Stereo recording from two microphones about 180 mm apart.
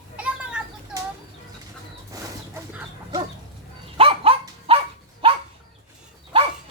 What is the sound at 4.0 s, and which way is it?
Dog, 30° right (ahead or behind).